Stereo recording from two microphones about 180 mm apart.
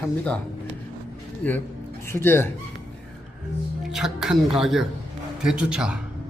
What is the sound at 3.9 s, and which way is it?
A man's voice, centre (ahead or behind).